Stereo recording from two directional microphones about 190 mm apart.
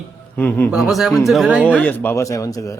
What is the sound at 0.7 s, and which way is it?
A man's voice, centre (ahead or behind).